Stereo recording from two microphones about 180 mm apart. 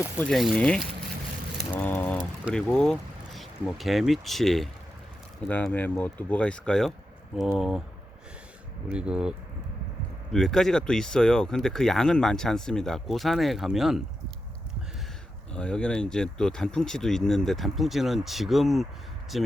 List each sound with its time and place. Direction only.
0.3 s speech: centre (ahead or behind)
1.7 s vehicle: 10° left (ahead or behind)
2.5 s speech: 5° left (ahead or behind)
8.9 s speech: 5° right (ahead or behind)
10.3 s speech: 5° left (ahead or behind)
15.5 s speech: 5° left (ahead or behind)